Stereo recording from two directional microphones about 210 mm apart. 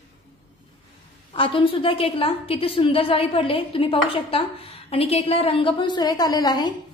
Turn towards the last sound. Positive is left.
turn(degrees=20)  # may be behind; listen again after turning